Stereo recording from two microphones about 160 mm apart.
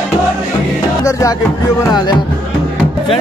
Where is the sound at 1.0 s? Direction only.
20° left (ahead or behind).